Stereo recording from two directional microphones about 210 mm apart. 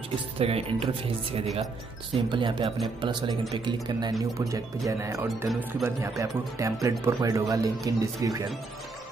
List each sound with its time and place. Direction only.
0.4 s speech: 25° right (ahead or behind)